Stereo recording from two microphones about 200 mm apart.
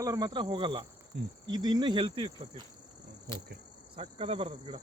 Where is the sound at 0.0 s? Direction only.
20° right (ahead or behind).